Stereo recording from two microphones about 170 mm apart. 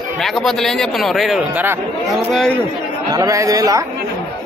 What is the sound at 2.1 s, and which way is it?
Speech, centre (ahead or behind).